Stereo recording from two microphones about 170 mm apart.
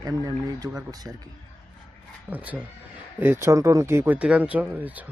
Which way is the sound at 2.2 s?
10° right (ahead or behind).